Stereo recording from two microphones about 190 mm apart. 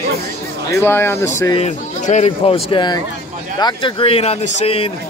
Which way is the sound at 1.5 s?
35° left (ahead or behind).